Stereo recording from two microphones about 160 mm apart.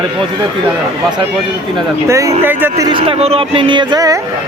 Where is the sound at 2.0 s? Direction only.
20° right (ahead or behind).